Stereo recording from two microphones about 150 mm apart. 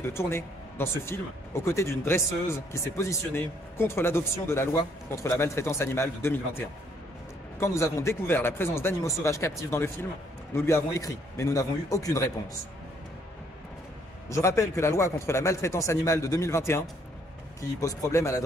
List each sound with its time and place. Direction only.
0.0 s a man's voice: 15° left (ahead or behind)
14.3 s a man's voice: 20° left (ahead or behind)